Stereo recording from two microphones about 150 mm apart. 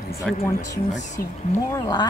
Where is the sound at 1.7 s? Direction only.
25° left (ahead or behind).